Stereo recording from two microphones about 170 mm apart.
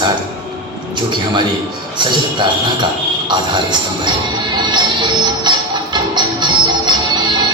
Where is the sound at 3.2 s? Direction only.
25° right (ahead or behind).